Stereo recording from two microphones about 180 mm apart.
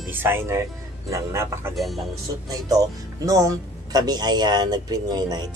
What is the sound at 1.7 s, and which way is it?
Speech, centre (ahead or behind).